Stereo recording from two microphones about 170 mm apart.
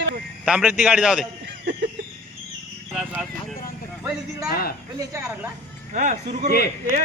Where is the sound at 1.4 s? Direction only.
75° right (ahead or behind).